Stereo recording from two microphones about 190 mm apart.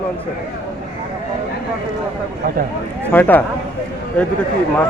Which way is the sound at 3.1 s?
10° left (ahead or behind).